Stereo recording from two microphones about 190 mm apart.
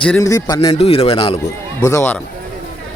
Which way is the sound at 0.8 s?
30° left (ahead or behind).